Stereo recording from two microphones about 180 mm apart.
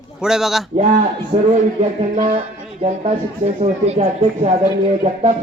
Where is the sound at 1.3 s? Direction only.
40° right (ahead or behind).